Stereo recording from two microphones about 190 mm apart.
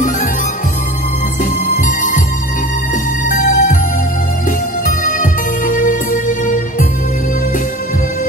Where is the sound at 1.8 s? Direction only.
45° left (ahead or behind).